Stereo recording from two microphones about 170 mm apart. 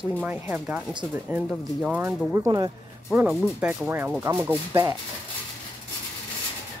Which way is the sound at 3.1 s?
5° right (ahead or behind).